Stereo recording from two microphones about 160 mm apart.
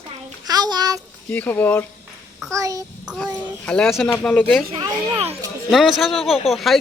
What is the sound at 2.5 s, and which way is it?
Speech, 20° right (ahead or behind).